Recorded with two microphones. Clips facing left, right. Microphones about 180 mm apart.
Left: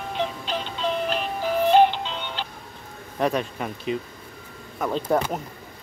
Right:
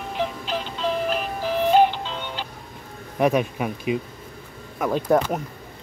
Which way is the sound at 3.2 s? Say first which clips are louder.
Right 4 dB; 10° right (ahead or behind).